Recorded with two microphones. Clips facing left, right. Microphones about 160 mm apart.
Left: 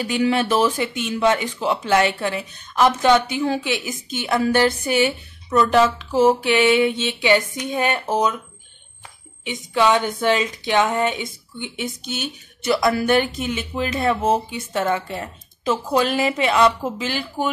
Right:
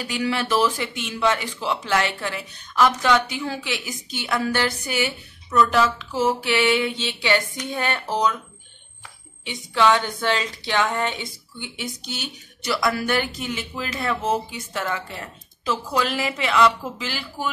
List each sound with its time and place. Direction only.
0.4 s speech: 20° left (ahead or behind)
9.4 s speech: 15° left (ahead or behind)
12.6 s speech: 25° left (ahead or behind)